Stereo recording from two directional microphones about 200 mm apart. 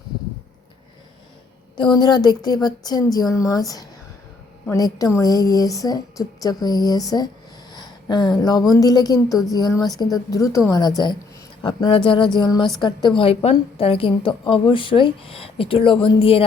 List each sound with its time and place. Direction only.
1.7 s a woman's voice: 25° left (ahead or behind)
7.7 s a sound: 20° left (ahead or behind)
8.7 s a woman's voice: 20° left (ahead or behind)